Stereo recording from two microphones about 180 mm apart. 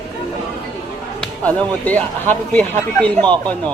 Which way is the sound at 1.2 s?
10° left (ahead or behind).